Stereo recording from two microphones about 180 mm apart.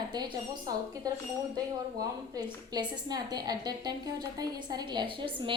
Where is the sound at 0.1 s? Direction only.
25° right (ahead or behind).